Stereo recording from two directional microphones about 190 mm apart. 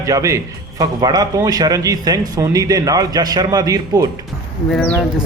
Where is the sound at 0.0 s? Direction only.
15° right (ahead or behind).